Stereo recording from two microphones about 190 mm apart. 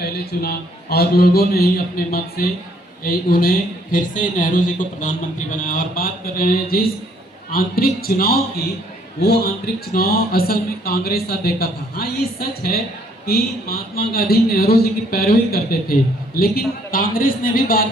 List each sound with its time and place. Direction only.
0.0 s a man's voice: 55° left (ahead or behind)